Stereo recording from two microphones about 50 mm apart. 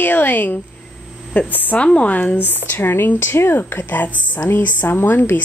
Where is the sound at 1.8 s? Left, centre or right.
Left.